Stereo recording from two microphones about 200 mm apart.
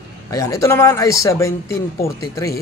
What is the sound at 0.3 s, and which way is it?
A man's voice, 15° left (ahead or behind).